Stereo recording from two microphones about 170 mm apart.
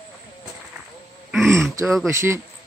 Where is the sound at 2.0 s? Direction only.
15° right (ahead or behind).